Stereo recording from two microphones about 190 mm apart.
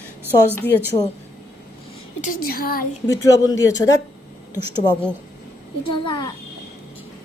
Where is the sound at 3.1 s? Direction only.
15° left (ahead or behind).